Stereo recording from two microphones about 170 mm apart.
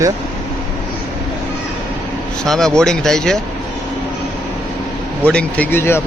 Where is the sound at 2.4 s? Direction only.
Centre (ahead or behind).